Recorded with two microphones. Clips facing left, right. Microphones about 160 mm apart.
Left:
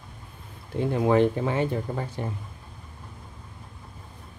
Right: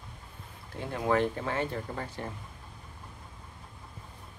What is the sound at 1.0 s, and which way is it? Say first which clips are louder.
Speech: left 6 dB; 20° left (ahead or behind).